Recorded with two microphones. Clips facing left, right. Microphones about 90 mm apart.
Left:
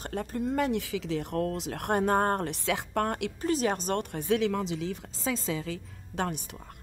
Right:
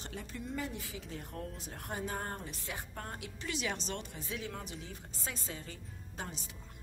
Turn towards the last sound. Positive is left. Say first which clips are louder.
# left 12 dB
turn(degrees=80)